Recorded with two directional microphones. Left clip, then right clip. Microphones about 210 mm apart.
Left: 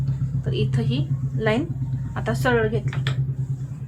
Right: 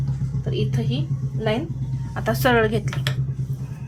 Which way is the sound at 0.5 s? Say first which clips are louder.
Even; centre (ahead or behind).